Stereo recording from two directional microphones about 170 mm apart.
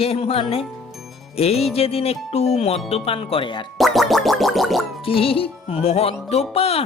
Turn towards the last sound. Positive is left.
turn(degrees=35)  # may be behind; listen again after turning